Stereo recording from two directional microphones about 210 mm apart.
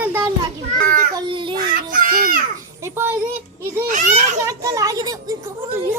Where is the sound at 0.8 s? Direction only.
40° right (ahead or behind).